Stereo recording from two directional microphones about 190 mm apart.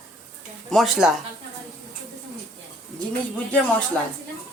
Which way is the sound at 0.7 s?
Centre (ahead or behind).